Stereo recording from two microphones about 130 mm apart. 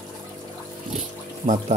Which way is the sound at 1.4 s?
70° right (ahead or behind).